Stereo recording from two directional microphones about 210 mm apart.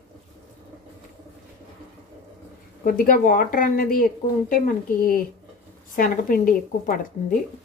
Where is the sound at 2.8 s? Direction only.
40° left (ahead or behind).